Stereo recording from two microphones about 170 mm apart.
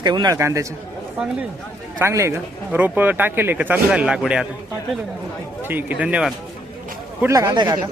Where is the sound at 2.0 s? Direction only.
15° right (ahead or behind).